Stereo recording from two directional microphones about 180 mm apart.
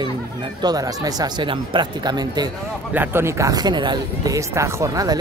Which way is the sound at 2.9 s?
10° right (ahead or behind).